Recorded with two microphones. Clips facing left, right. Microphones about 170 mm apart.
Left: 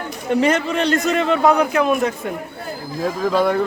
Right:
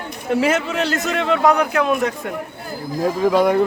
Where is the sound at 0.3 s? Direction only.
5° right (ahead or behind).